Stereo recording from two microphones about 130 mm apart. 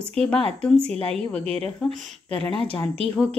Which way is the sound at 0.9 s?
50° right (ahead or behind).